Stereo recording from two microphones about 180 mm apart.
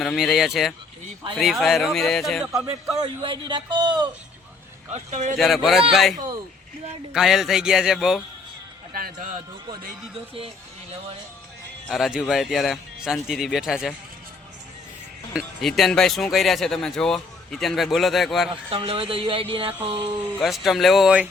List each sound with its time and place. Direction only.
0.0 s speech: centre (ahead or behind)
3.0 s speech: 25° right (ahead or behind)
4.9 s speech: 40° right (ahead or behind)
5.4 s speech: centre (ahead or behind)
8.9 s speech: 55° right (ahead or behind)
11.9 s speech: centre (ahead or behind)
15.3 s speech: centre (ahead or behind)
18.7 s speech: 30° right (ahead or behind)
20.4 s speech: centre (ahead or behind)